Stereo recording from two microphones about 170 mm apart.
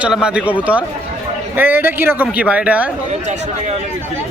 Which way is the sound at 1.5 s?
10° right (ahead or behind).